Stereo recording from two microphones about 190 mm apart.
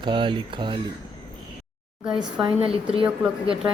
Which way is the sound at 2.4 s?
30° right (ahead or behind).